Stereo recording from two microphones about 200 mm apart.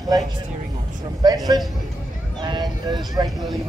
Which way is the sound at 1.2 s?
20° right (ahead or behind).